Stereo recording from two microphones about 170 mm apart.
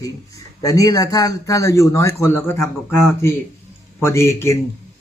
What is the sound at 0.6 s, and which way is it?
A man's voice, 20° left (ahead or behind).